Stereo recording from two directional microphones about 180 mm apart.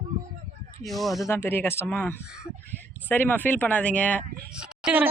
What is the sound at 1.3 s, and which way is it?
Speech, 15° left (ahead or behind).